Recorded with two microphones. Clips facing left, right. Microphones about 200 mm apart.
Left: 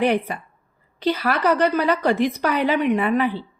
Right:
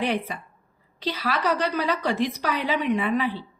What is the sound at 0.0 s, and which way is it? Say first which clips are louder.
A woman's voice: left 6 dB; 55° left (ahead or behind).